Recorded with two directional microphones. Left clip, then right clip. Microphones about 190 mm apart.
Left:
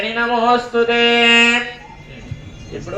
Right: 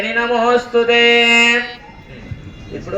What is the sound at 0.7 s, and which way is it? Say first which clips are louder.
Mantra: right 2 dB; 50° right (ahead or behind).